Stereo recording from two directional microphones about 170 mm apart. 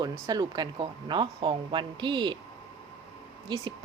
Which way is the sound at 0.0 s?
25° right (ahead or behind).